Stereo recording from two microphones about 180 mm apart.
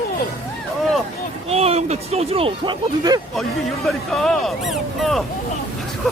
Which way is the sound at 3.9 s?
Centre (ahead or behind).